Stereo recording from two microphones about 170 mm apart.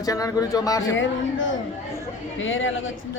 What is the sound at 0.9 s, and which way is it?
Speech, 90° left.